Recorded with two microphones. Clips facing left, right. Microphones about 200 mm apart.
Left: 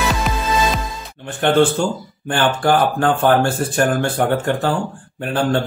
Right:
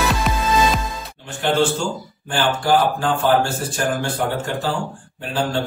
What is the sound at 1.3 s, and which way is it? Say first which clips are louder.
A man's voice: left 4 dB; 55° left (ahead or behind).